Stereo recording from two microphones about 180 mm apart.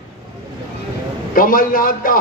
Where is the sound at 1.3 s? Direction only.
50° left (ahead or behind).